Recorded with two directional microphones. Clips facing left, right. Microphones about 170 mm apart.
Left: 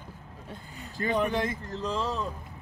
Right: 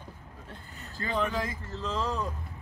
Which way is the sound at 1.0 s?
20° left (ahead or behind).